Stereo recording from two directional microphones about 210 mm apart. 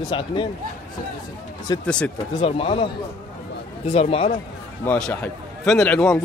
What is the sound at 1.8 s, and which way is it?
Speech, 5° left (ahead or behind).